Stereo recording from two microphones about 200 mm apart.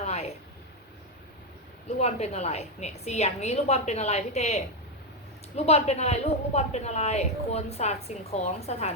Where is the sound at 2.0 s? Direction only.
35° left (ahead or behind).